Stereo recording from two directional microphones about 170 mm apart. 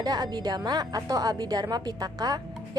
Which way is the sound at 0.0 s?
25° right (ahead or behind).